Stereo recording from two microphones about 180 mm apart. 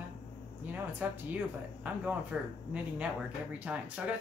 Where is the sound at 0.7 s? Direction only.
10° right (ahead or behind).